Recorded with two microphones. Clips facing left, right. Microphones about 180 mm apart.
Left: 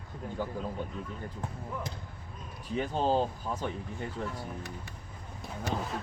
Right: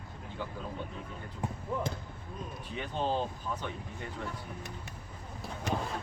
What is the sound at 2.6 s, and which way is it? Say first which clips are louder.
Speech: left 5 dB; 40° left (ahead or behind).